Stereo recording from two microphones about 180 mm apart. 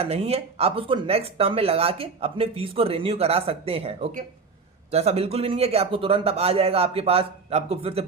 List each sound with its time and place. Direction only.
0.0 s speech: 35° right (ahead or behind)